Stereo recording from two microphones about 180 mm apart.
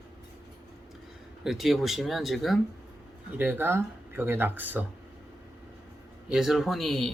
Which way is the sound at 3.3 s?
10° right (ahead or behind).